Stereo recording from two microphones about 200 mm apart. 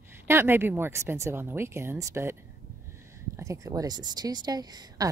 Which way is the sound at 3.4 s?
15° right (ahead or behind).